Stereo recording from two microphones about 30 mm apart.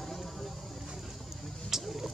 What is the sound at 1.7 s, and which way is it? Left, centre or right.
Vehicle, centre.